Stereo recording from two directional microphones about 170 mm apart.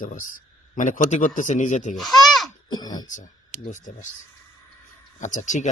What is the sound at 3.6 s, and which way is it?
Speech, 50° left (ahead or behind).